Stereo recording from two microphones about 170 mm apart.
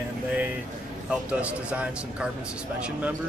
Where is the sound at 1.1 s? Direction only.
5° right (ahead or behind).